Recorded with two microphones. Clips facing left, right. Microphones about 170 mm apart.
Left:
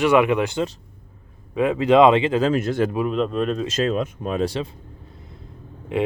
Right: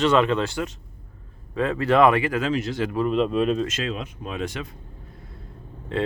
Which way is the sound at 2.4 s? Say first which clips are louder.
Left 5 dB; 50° left (ahead or behind).